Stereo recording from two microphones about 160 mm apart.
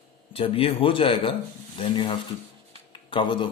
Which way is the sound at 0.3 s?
35° left (ahead or behind).